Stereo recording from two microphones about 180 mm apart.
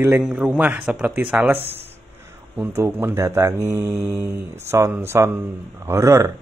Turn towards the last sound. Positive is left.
turn(degrees=-15)  # may be behind; listen again after turning